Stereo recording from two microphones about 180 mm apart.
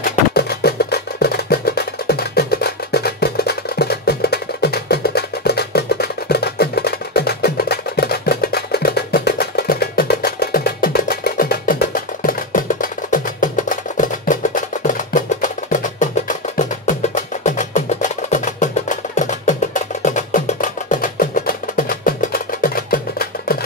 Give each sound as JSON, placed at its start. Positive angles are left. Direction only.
{"t": 0.0, "sound": "music", "side_deg": 55}